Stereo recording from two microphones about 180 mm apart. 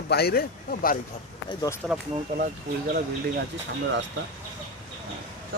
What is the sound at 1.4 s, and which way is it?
Speech, 20° left (ahead or behind).